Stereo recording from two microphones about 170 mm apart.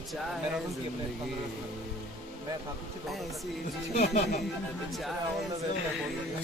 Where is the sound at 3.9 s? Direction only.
40° left (ahead or behind).